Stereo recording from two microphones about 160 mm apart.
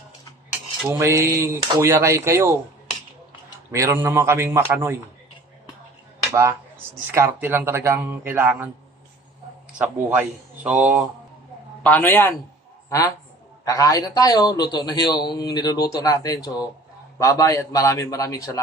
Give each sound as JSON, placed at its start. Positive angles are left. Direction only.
{"t": 0.9, "sound": "speech", "side_deg": -20}
{"t": 3.7, "sound": "speech", "side_deg": -15}
{"t": 7.1, "sound": "speech", "side_deg": -15}
{"t": 9.7, "sound": "speech", "side_deg": -10}
{"t": 11.8, "sound": "a man's voice", "side_deg": 10}